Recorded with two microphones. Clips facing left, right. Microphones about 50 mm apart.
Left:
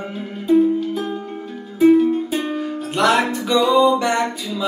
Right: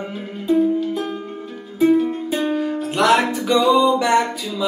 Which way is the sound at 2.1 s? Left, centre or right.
Centre.